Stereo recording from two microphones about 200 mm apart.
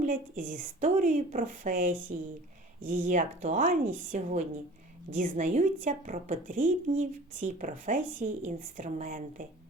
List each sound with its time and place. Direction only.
0.0 s a woman's voice: 40° right (ahead or behind)